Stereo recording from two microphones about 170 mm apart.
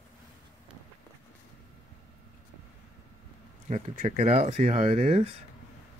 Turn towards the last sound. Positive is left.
turn(degrees=-40)  # may be behind; listen again after turning